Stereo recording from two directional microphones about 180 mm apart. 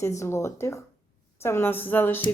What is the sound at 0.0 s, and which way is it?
Speech, 15° left (ahead or behind).